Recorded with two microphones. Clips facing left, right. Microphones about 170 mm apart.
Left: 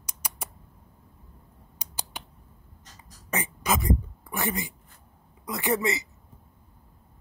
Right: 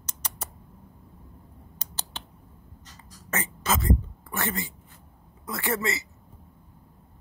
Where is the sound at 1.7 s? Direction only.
10° left (ahead or behind).